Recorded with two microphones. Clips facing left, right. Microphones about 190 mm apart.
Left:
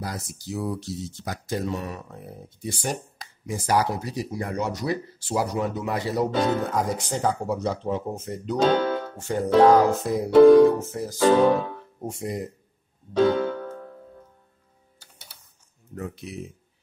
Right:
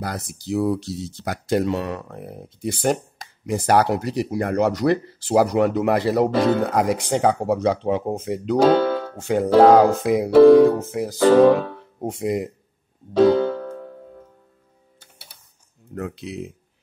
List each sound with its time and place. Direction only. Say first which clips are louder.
0.0 s speech: right 4 dB; 65° right (ahead or behind); by 11.5 s 85° right
12.0 s speech: right 7 dB; 70° right (ahead or behind)
13.2 s music: right 5 dB; 30° right (ahead or behind)
15.9 s speech: right 5 dB; 70° right (ahead or behind)